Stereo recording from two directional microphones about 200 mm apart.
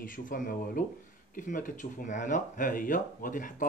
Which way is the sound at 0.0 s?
40° left (ahead or behind).